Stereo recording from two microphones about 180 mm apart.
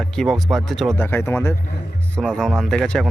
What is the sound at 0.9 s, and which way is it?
Speech, 15° left (ahead or behind).